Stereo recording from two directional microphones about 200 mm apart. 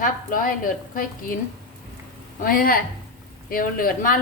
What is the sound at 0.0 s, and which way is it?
Speech, 40° left (ahead or behind).